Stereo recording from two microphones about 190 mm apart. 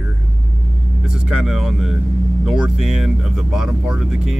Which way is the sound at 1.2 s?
5° right (ahead or behind).